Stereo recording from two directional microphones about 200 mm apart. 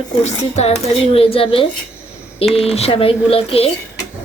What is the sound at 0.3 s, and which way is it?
Speech, 35° left (ahead or behind).